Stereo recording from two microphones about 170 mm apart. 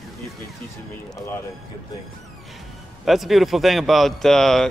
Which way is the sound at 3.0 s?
Centre (ahead or behind).